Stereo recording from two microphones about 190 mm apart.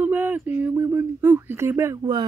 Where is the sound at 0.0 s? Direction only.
10° right (ahead or behind).